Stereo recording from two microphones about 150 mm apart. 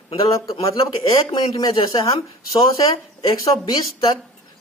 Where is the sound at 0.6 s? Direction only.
30° left (ahead or behind).